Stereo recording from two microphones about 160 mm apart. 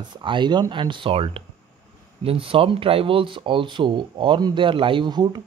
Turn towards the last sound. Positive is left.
turn(degrees=-25)  # may be behind; listen again after turning